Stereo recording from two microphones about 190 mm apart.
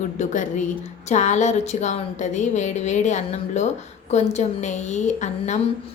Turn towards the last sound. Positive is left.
turn(degrees=40)  # may be behind; listen again after turning